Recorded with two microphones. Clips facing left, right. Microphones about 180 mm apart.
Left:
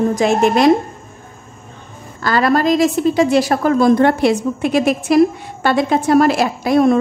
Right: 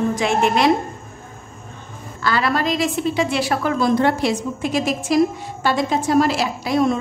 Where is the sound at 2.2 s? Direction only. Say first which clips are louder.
Left 6 dB; 45° left (ahead or behind).